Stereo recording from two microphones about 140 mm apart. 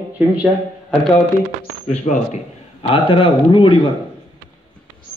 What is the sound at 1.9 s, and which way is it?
Speech, 60° left (ahead or behind).